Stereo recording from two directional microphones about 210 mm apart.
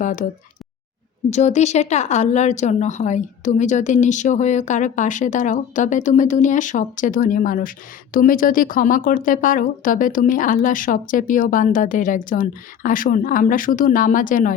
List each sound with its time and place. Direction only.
0.0 s speech: 40° left (ahead or behind)
1.3 s speech: 35° left (ahead or behind)